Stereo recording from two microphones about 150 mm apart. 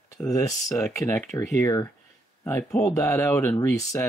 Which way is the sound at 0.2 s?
25° left (ahead or behind).